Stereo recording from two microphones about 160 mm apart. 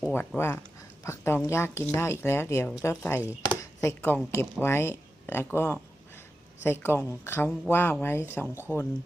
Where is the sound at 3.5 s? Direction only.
20° left (ahead or behind).